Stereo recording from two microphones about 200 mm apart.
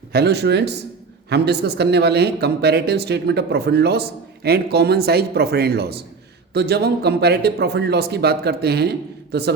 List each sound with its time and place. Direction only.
0.1 s speech: 55° right (ahead or behind)